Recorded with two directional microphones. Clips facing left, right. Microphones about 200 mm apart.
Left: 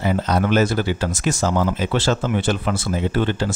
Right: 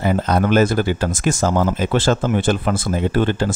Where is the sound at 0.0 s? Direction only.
50° right (ahead or behind).